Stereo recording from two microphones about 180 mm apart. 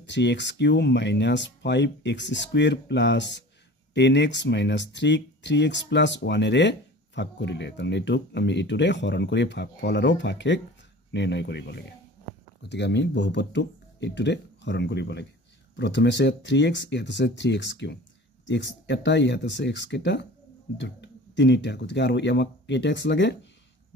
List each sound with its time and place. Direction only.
0.0 s speech: 75° left (ahead or behind)
15.7 s speech: 85° left